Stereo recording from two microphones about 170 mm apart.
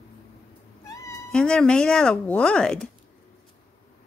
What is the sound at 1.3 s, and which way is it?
Speech, 5° left (ahead or behind).